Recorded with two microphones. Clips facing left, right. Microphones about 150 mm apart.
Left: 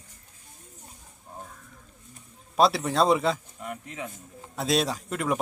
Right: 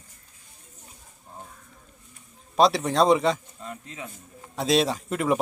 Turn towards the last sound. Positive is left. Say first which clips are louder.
# right 4 dB
turn(degrees=0)  # may be behind; listen again after turning